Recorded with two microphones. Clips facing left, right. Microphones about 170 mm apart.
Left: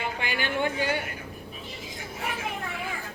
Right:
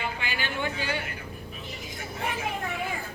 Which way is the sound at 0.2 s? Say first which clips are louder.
Left 4 dB; 55° left (ahead or behind).